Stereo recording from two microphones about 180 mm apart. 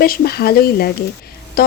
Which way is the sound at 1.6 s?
55° left (ahead or behind).